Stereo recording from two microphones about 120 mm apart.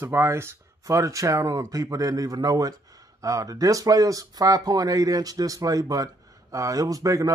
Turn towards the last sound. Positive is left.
turn(degrees=-30)  # may be behind; listen again after turning